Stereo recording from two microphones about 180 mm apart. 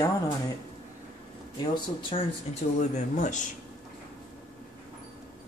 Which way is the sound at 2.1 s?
40° left (ahead or behind).